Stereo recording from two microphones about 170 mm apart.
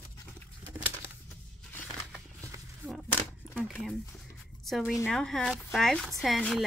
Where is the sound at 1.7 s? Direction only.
10° left (ahead or behind).